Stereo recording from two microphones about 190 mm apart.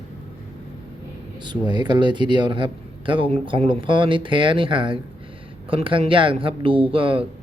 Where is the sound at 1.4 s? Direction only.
25° right (ahead or behind).